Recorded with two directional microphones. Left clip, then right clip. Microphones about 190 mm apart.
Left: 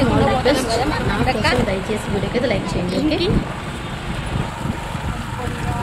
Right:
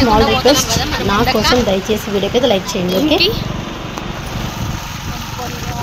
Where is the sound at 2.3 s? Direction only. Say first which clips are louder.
Right 7 dB; 25° right (ahead or behind).